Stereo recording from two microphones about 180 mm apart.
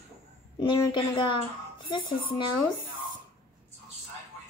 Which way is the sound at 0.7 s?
25° left (ahead or behind).